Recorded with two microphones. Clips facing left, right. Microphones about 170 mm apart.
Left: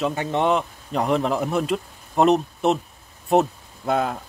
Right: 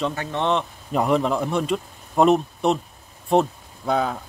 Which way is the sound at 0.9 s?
Centre (ahead or behind).